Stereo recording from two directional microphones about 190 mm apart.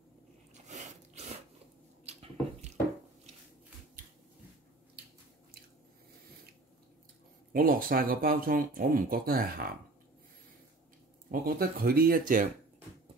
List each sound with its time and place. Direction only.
0.7 s sneeze: 40° right (ahead or behind)
2.0 s a sound: 35° right (ahead or behind)
7.5 s speech: 50° right (ahead or behind)
11.4 s speech: 50° right (ahead or behind)